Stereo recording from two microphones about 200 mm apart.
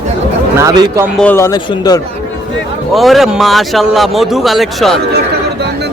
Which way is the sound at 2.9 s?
Centre (ahead or behind).